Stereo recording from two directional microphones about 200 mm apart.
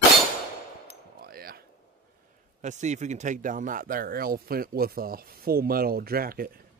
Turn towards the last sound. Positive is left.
turn(degrees=-45)  # may be behind; listen again after turning